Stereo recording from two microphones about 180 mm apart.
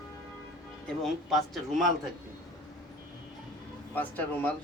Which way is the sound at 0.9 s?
Centre (ahead or behind).